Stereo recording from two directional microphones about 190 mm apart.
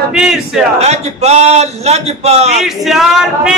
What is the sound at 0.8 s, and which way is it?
A man's voice, 35° right (ahead or behind).